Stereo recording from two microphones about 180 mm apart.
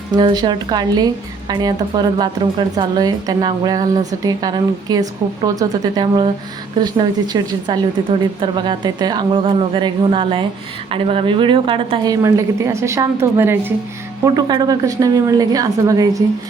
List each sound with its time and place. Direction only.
0.1 s speech: 25° right (ahead or behind)
12.2 s a woman's voice: 15° right (ahead or behind)
14.3 s speech: 25° right (ahead or behind)